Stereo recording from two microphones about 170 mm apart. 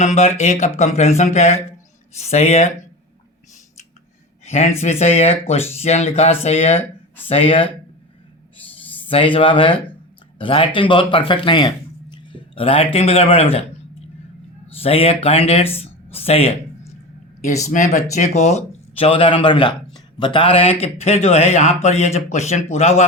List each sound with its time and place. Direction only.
0.0 s speech: 40° left (ahead or behind)
4.4 s speech: 40° left (ahead or behind)
9.0 s speech: 30° left (ahead or behind)
14.8 s speech: 35° left (ahead or behind)
17.6 s speech: 45° left (ahead or behind)